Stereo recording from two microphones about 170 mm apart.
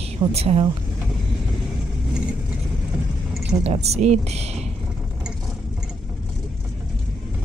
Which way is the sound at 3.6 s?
40° right (ahead or behind).